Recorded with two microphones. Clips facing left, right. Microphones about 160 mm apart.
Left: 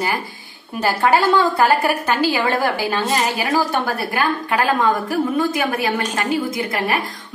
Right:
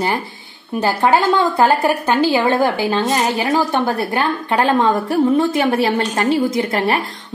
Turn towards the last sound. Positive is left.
turn(degrees=-30)  # may be behind; listen again after turning